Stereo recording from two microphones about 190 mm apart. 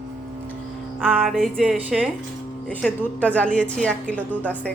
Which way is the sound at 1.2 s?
Centre (ahead or behind).